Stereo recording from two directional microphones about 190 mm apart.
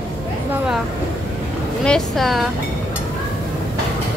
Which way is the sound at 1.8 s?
5° left (ahead or behind).